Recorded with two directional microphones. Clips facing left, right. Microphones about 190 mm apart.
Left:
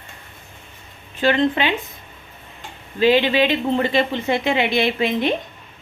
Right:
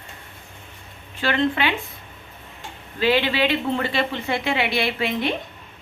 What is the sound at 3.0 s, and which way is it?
Speech, 20° left (ahead or behind).